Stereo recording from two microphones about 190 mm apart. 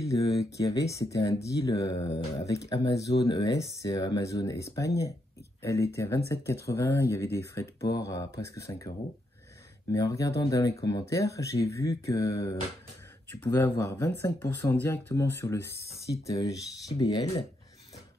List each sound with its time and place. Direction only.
0.0 s a sound: 20° left (ahead or behind)
0.6 s speech: 20° left (ahead or behind)
15.6 s speech: 60° right (ahead or behind)
16.3 s speech: 20° left (ahead or behind)